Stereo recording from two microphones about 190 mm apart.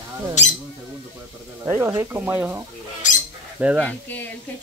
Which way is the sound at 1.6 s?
10° right (ahead or behind).